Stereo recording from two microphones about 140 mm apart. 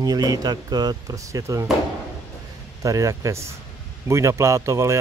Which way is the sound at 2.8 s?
25° right (ahead or behind).